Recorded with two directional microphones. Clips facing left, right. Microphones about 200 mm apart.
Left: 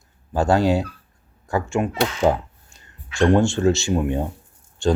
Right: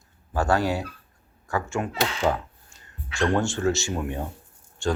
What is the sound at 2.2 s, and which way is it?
Speech, 30° left (ahead or behind).